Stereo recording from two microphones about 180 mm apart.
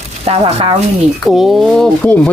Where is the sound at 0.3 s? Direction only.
30° right (ahead or behind).